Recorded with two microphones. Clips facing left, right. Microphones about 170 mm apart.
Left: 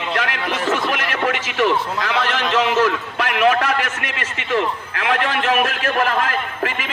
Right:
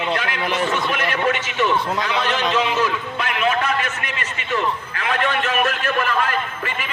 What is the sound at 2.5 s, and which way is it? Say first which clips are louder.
A man's voice: left 6 dB; 85° left.